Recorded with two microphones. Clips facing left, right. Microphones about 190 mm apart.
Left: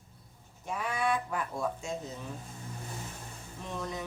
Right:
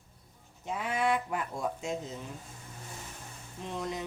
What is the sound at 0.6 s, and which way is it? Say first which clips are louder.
Speech: right 1 dB; 20° right (ahead or behind).